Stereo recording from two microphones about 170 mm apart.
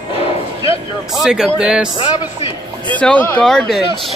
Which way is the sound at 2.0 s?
30° left (ahead or behind).